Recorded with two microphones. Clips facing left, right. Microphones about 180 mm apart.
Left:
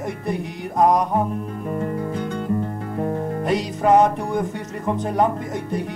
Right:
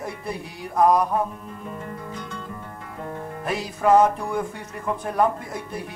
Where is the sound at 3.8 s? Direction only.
20° left (ahead or behind).